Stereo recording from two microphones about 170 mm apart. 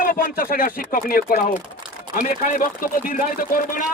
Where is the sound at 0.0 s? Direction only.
55° left (ahead or behind).